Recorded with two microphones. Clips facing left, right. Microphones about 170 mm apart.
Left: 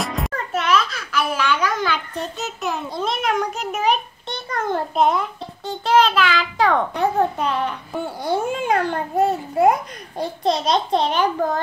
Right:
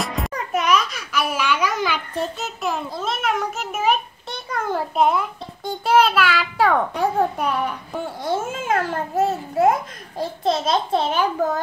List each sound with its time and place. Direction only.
0.0 s music: centre (ahead or behind)
0.3 s a child's voice: 15° right (ahead or behind)